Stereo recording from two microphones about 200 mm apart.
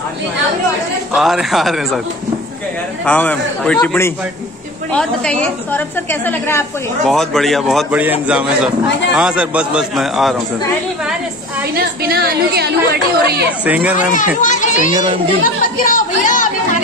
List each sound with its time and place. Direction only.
1.1 s a man's voice: centre (ahead or behind)
3.1 s a woman's voice: 5° left (ahead or behind)
11.7 s a woman's voice: 50° right (ahead or behind)
13.7 s speech: 10° right (ahead or behind)
14.1 s a child's voice: 40° left (ahead or behind)